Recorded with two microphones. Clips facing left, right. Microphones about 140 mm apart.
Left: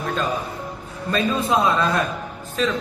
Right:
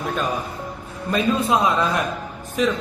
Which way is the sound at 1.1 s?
15° right (ahead or behind).